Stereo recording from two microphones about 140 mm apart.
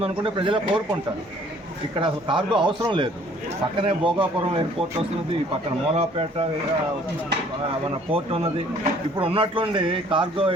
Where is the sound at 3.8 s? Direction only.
40° right (ahead or behind).